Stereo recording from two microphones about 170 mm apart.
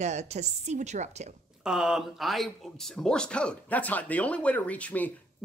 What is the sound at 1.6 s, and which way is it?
Speech, 5° right (ahead or behind).